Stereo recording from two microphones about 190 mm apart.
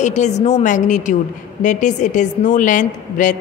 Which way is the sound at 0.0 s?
40° left (ahead or behind).